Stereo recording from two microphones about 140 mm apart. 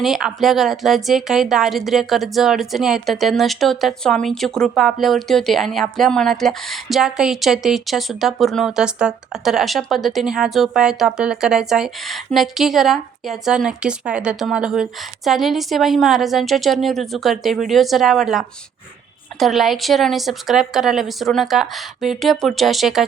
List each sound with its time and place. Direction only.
0.0 s a woman's voice: centre (ahead or behind)